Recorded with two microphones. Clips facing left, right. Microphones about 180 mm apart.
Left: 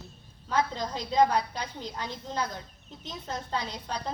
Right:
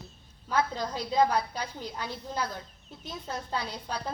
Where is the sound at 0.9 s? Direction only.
20° left (ahead or behind).